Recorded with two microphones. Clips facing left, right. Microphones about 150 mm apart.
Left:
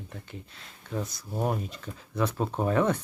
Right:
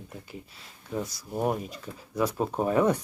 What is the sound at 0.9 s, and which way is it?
Speech, 5° right (ahead or behind).